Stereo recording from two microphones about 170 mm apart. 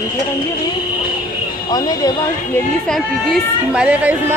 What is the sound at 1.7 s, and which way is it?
Speech, 20° left (ahead or behind).